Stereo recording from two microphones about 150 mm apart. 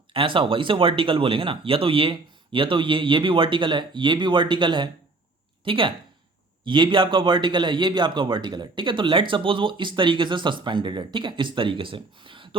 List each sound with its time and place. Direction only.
0.1 s a man's voice: 35° right (ahead or behind)